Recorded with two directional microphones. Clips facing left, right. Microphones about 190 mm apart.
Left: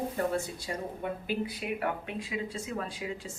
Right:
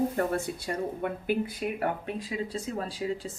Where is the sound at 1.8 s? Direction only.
40° right (ahead or behind).